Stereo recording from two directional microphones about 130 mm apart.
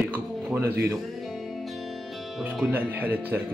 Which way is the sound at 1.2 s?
Centre (ahead or behind).